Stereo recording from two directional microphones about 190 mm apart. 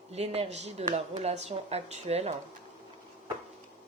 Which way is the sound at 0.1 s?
30° right (ahead or behind).